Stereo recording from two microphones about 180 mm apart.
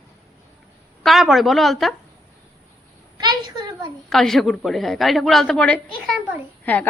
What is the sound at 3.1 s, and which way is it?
Speech, 25° right (ahead or behind).